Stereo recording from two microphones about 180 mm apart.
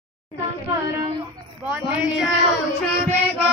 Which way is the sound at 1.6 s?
5° right (ahead or behind).